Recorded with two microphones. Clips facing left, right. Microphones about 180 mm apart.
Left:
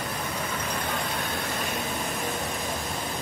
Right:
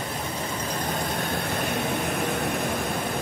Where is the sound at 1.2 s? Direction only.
55° right (ahead or behind).